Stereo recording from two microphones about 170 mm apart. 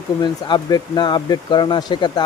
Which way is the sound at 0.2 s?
25° left (ahead or behind).